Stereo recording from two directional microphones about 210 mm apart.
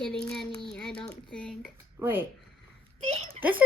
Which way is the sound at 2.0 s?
10° right (ahead or behind).